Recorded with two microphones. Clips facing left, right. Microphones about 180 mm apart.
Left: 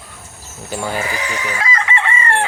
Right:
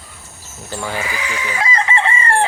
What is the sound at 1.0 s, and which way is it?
Speech, 40° left (ahead or behind).